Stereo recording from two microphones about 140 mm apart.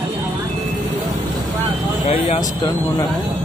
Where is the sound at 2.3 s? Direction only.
25° left (ahead or behind).